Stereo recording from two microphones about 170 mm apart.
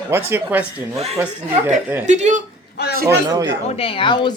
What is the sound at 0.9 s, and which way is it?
Speech, 40° right (ahead or behind).